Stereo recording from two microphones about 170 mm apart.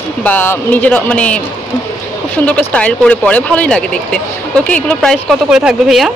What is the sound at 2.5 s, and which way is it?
A woman's voice, 10° left (ahead or behind).